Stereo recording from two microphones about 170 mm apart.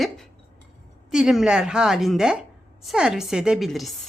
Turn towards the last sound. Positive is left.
turn(degrees=0)  # may be behind; listen again after turning